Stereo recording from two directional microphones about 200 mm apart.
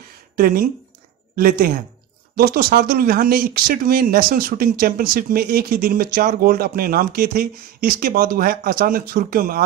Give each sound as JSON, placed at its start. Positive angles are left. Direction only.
{"t": 0.4, "sound": "speech", "side_deg": -45}